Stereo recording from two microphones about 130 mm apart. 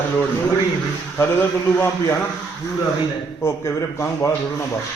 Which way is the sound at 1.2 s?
15° left (ahead or behind).